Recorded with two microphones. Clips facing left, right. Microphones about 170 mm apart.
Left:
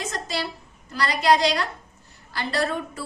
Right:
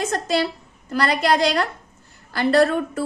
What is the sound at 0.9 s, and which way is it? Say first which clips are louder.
A woman's voice: right 1 dB; 55° right (ahead or behind).